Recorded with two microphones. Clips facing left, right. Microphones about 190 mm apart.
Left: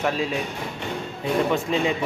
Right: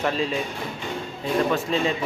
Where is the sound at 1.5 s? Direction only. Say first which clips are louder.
Left 1 dB; 15° left (ahead or behind).